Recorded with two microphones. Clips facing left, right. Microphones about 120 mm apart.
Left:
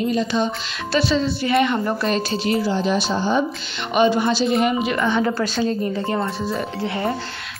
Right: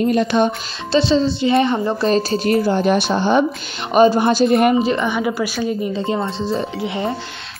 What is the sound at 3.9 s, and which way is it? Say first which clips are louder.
Speech: right 4 dB; 40° right (ahead or behind).